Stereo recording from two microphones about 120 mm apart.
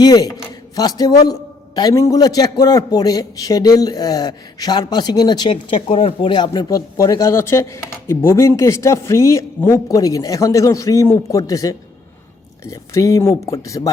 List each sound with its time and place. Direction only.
0.0 s a man's voice: 35° left (ahead or behind)